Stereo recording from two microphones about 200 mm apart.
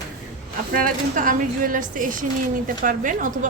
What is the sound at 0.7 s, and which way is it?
A woman's voice, 45° right (ahead or behind).